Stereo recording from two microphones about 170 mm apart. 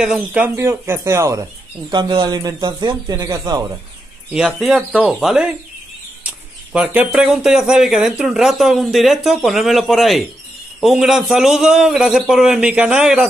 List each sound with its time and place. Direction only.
0.0 s speech: 5° right (ahead or behind)
1.9 s a man's voice: 25° right (ahead or behind)
4.3 s speech: centre (ahead or behind)
6.7 s speech: 10° right (ahead or behind)